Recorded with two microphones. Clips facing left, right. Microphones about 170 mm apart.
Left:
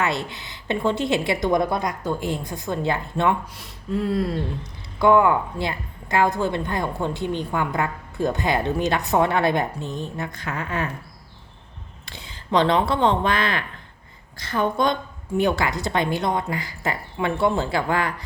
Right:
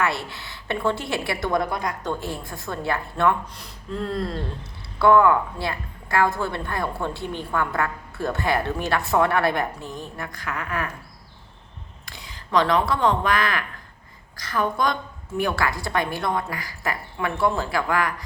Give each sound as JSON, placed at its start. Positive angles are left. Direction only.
{"t": 0.0, "sound": "speech", "side_deg": 20}
{"t": 3.5, "sound": "speech", "side_deg": 5}
{"t": 12.0, "sound": "speech", "side_deg": 25}